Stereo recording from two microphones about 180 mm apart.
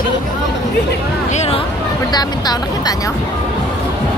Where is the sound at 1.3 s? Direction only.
35° left (ahead or behind).